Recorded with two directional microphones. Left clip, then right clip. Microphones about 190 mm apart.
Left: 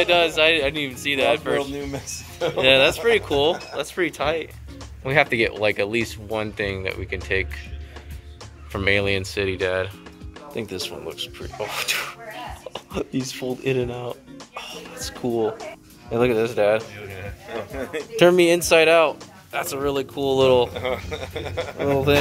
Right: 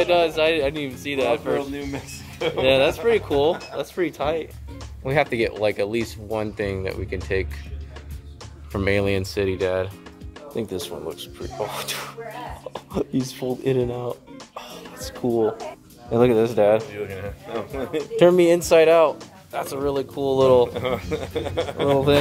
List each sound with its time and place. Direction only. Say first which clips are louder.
0.0 s speech: left 1 dB; 5° right (ahead or behind)
1.7 s speech: left 1 dB; 40° left (ahead or behind)
2.6 s speech: left 2 dB; centre (ahead or behind)
8.7 s speech: left 1 dB; 15° right (ahead or behind)
13.3 s music: right 1 dB; 15° right (ahead or behind)
15.1 s speech: right 2 dB; 10° right (ahead or behind)
17.1 s speech: right 2 dB; 50° right (ahead or behind)
17.9 s speech: even; centre (ahead or behind)
20.7 s speech: right 1 dB; 50° right (ahead or behind)
21.8 s speech: right 1 dB; centre (ahead or behind)